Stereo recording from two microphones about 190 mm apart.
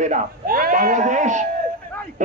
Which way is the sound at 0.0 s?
45° right (ahead or behind).